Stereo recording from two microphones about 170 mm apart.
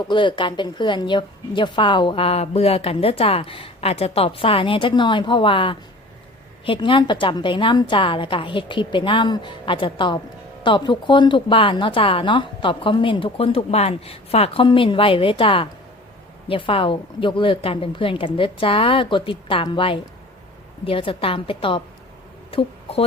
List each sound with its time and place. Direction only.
0.1 s a woman's voice: 30° left (ahead or behind)